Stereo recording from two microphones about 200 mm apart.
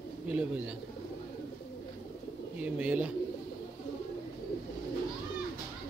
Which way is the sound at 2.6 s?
5° right (ahead or behind).